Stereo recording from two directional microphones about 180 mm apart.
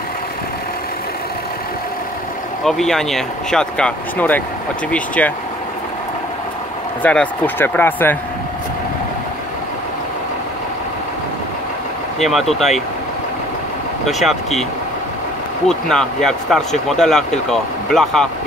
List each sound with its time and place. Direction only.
2.6 s speech: centre (ahead or behind)
7.0 s speech: 10° left (ahead or behind)
12.2 s speech: centre (ahead or behind)
14.0 s speech: centre (ahead or behind)
15.7 s speech: 5° left (ahead or behind)